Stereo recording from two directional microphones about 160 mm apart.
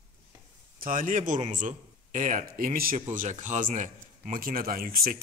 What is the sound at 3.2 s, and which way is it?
A man's voice, 50° right (ahead or behind).